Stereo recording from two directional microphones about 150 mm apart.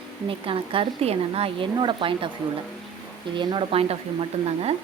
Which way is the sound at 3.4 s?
35° right (ahead or behind).